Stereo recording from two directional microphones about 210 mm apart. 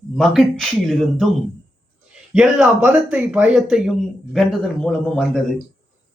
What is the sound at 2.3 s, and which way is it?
A man's voice, 5° right (ahead or behind).